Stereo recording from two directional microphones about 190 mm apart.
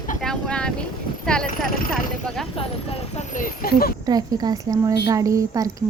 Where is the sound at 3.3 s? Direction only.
50° left (ahead or behind).